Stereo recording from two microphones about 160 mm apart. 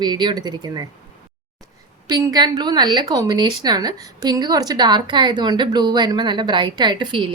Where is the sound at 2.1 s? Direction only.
25° right (ahead or behind).